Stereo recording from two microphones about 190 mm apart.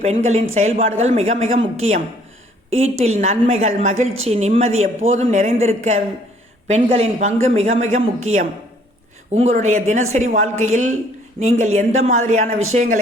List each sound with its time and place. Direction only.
0.0 s a woman's voice: 35° right (ahead or behind)